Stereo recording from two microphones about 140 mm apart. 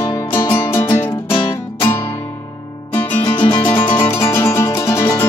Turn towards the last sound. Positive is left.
turn(degrees=20)  # may be behind; listen again after turning